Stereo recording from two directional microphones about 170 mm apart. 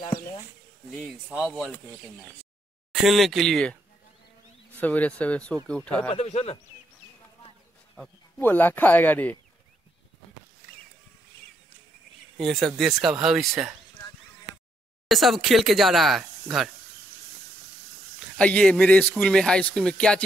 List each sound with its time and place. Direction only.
0.8 s speech: centre (ahead or behind)
4.7 s speech: 10° left (ahead or behind)
6.0 s speech: 35° left (ahead or behind)
7.9 s speech: 5° left (ahead or behind)
10.6 s a sound: 60° left (ahead or behind)
12.4 s speech: centre (ahead or behind)
15.0 s speech: centre (ahead or behind)
18.4 s speech: 5° left (ahead or behind)